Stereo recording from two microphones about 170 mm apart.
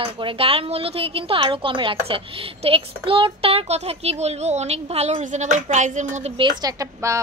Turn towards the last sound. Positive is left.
turn(degrees=-20)  # may be behind; listen again after turning